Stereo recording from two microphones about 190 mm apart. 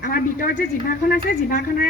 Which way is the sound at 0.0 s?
45° left (ahead or behind).